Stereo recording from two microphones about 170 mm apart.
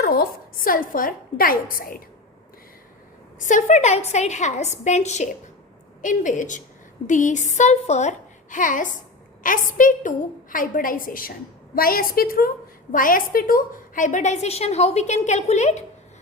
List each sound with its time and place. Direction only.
0.0 s a woman's voice: 60° left (ahead or behind)
3.4 s a woman's voice: 45° left (ahead or behind)